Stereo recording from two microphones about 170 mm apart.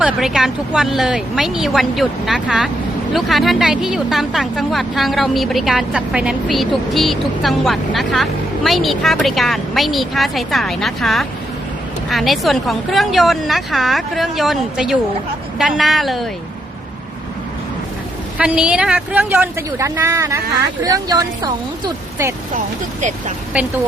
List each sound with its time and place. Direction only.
0.0 s speech: 5° right (ahead or behind)
18.3 s a woman's voice: 5° right (ahead or behind)